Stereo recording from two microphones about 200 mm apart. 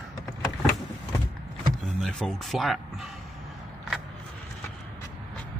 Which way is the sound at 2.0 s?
5° left (ahead or behind).